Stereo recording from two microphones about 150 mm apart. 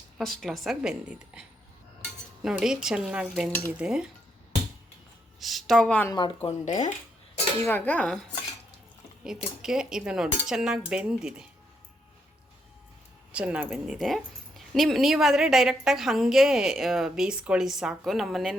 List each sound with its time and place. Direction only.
0.2 s a woman's voice: centre (ahead or behind)
5.4 s a woman's voice: centre (ahead or behind)
6.1 s speech: 30° left (ahead or behind)
6.7 s speech: 55° left (ahead or behind)
7.6 s speech: 15° left (ahead or behind)
9.2 s a woman's voice: 5° right (ahead or behind)
13.3 s a woman's voice: 10° right (ahead or behind)